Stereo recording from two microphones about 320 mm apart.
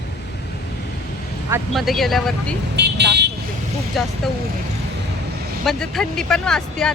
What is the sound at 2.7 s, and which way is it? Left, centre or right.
Vehicle, right.